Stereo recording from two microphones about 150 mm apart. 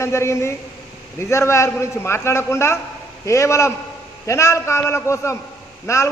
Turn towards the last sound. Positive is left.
turn(degrees=20)  # may be behind; listen again after turning